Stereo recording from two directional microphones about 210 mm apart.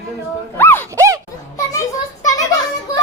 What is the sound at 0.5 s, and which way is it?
Dog, 10° left (ahead or behind).